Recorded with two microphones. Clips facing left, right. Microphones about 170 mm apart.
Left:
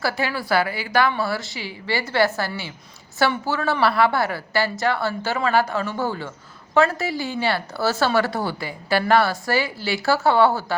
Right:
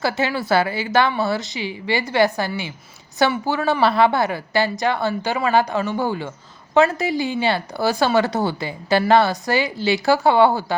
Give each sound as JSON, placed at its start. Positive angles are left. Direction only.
{"t": 0.0, "sound": "a woman's voice", "side_deg": -20}